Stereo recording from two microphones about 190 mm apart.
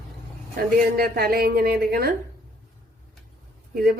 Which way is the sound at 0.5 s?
55° right (ahead or behind).